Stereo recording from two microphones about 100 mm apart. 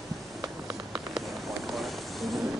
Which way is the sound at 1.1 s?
Centre (ahead or behind).